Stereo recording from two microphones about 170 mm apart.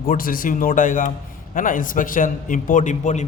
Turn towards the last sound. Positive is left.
turn(degrees=45)  # may be behind; listen again after turning